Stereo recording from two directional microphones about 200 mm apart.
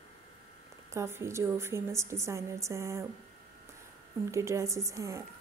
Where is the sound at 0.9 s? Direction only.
15° right (ahead or behind).